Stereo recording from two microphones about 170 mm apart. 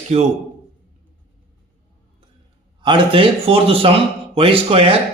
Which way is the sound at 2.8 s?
30° right (ahead or behind).